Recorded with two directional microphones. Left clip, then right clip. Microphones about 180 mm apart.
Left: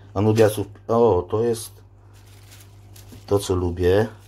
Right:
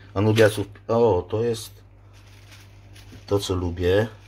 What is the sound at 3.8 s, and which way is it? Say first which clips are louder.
Speech: left 2 dB; 10° left (ahead or behind).